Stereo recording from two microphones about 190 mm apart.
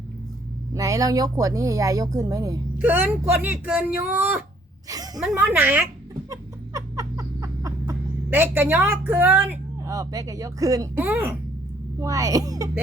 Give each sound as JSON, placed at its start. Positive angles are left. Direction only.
{"t": 0.7, "sound": "speech", "side_deg": -15}
{"t": 6.3, "sound": "a sound", "side_deg": -20}
{"t": 11.9, "sound": "speech", "side_deg": -15}